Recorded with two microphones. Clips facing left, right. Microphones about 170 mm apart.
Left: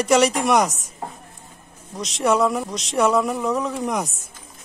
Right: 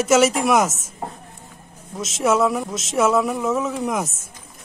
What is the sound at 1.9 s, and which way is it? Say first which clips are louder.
Speech: right 1 dB; centre (ahead or behind).